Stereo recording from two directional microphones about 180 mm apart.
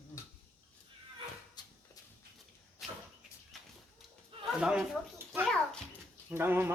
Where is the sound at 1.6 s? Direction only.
25° left (ahead or behind).